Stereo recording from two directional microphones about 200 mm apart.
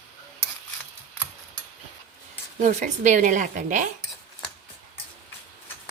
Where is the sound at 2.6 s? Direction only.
40° right (ahead or behind).